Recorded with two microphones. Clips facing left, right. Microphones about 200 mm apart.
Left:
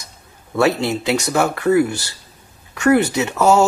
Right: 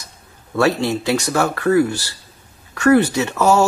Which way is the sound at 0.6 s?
15° left (ahead or behind).